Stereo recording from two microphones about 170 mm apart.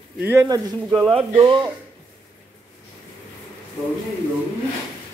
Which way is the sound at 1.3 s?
25° right (ahead or behind).